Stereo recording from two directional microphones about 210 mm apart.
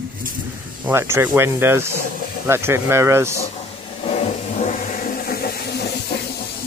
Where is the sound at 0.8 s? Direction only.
10° right (ahead or behind).